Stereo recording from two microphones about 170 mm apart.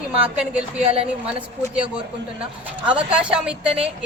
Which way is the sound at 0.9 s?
35° right (ahead or behind).